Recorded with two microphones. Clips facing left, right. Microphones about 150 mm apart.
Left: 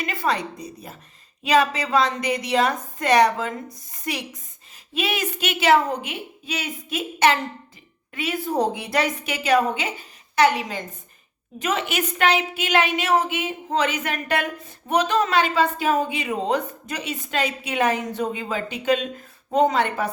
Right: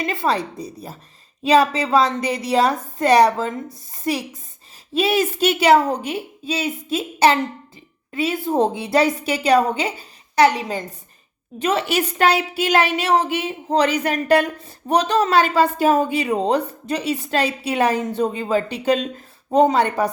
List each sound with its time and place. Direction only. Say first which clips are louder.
0.0 s a woman's voice: right 3 dB; 25° right (ahead or behind)